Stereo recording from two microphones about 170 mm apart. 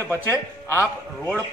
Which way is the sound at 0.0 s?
15° left (ahead or behind).